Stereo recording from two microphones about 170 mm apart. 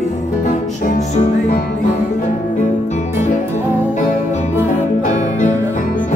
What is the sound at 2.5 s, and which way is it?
Music, 45° left (ahead or behind).